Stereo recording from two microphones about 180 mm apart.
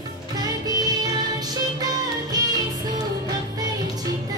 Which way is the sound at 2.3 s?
20° right (ahead or behind).